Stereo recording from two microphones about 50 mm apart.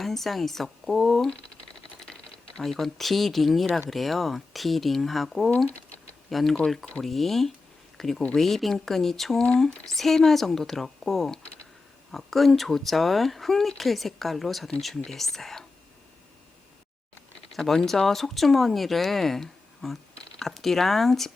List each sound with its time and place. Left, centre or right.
0.0 s speech: centre
2.6 s speech: centre
5.6 s typing: left
6.3 s speech: centre
17.5 s speech: centre